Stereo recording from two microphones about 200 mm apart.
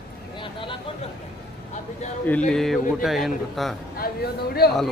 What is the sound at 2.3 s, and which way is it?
A man's voice, 5° left (ahead or behind).